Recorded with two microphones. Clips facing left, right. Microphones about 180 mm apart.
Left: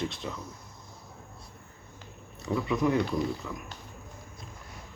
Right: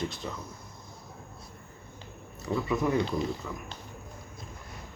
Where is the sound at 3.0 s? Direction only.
25° right (ahead or behind).